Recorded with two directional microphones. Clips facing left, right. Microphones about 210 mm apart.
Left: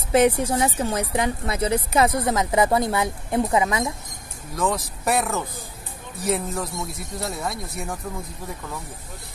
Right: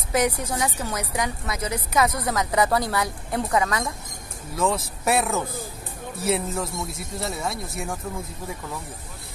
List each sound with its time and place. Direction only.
0.1 s a woman's voice: 30° left (ahead or behind)
4.6 s speech: centre (ahead or behind)